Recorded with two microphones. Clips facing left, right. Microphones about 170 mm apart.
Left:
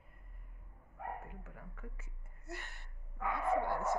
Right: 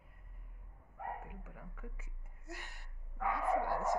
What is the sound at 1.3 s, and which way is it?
Speech, 10° right (ahead or behind).